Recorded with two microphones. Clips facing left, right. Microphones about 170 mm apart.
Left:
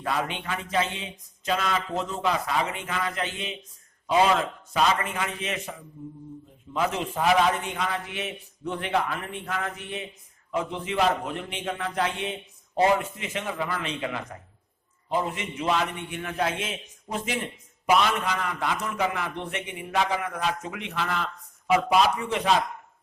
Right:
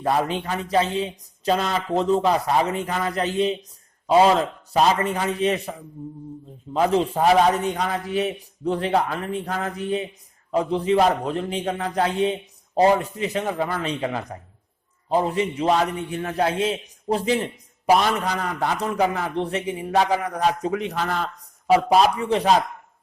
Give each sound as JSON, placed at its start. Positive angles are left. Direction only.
{"t": 0.0, "sound": "speech", "side_deg": -40}
{"t": 6.7, "sound": "speech", "side_deg": -35}